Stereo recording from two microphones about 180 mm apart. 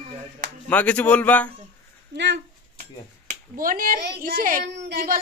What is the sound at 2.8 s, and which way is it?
Speech, 50° right (ahead or behind).